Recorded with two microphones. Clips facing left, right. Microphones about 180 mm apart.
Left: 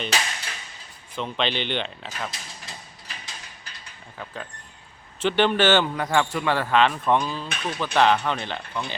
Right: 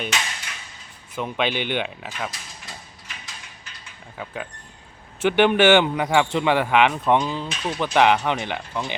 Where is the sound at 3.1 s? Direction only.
35° left (ahead or behind).